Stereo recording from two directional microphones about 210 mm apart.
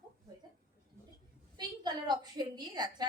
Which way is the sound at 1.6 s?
20° right (ahead or behind).